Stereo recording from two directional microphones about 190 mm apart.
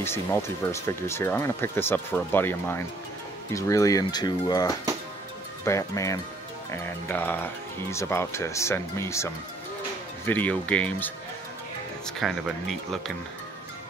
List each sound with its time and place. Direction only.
0.0 s speech: 15° left (ahead or behind)
12.2 s speech: centre (ahead or behind)